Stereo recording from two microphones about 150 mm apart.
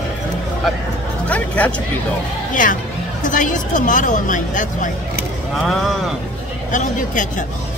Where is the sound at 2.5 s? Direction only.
60° left (ahead or behind).